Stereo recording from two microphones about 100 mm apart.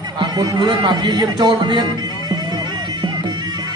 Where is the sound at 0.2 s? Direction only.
45° right (ahead or behind).